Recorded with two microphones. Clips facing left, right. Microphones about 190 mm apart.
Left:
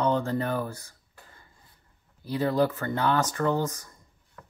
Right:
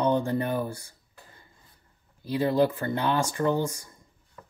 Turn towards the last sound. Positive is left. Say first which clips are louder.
# right 1 dB
turn(degrees=-10)  # may be behind; listen again after turning